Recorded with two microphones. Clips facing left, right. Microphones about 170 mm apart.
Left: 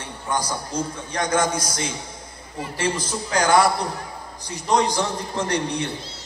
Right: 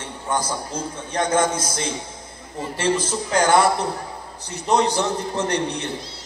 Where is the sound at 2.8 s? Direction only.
10° left (ahead or behind).